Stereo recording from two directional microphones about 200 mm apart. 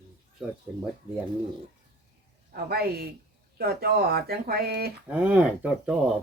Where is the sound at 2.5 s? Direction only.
50° right (ahead or behind).